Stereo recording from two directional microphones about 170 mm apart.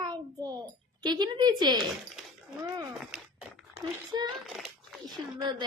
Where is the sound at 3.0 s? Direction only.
Centre (ahead or behind).